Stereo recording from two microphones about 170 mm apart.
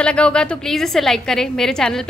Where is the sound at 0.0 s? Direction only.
5° left (ahead or behind).